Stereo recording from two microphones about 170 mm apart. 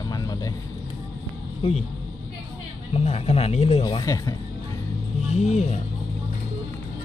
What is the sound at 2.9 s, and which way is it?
Speech, 35° left (ahead or behind).